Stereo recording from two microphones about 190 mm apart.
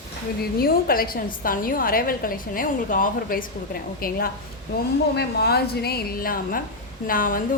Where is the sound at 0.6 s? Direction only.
50° left (ahead or behind).